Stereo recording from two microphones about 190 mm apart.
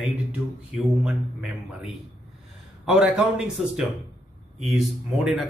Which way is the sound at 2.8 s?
5° right (ahead or behind).